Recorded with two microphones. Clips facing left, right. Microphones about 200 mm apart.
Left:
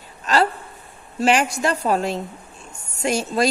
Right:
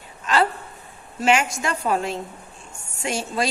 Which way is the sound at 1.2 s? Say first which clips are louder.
Left 2 dB; 35° left (ahead or behind).